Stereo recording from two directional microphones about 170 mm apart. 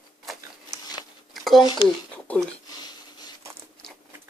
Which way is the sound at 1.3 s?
Centre (ahead or behind).